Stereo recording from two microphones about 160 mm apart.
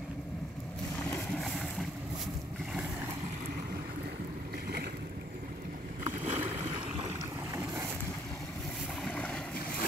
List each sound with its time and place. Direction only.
1.4 s vehicle: centre (ahead or behind)
6.2 s boat: 35° right (ahead or behind)
7.0 s boat: 20° right (ahead or behind)
9.1 s boat: 10° left (ahead or behind)